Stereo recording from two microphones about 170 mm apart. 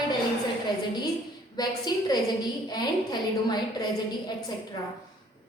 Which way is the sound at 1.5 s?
25° left (ahead or behind).